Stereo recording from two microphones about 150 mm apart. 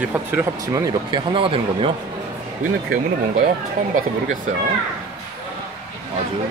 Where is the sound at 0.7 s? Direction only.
25° right (ahead or behind).